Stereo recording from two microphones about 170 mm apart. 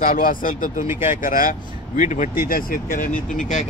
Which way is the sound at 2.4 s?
60° left (ahead or behind).